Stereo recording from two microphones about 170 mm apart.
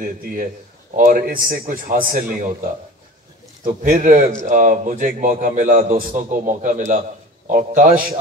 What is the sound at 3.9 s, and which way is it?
A man's voice, 55° right (ahead or behind).